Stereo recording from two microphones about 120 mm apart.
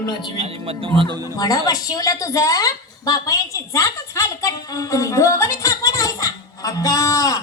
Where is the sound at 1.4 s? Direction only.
30° left (ahead or behind).